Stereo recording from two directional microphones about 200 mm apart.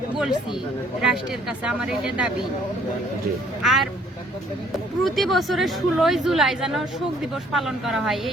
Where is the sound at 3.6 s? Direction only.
Centre (ahead or behind).